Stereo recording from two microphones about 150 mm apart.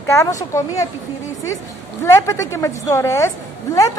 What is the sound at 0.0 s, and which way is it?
Speech, 20° left (ahead or behind).